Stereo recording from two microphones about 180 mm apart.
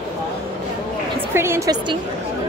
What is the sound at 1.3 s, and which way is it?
Speech, 15° right (ahead or behind).